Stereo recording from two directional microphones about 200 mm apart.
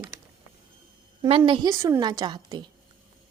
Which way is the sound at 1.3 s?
25° right (ahead or behind).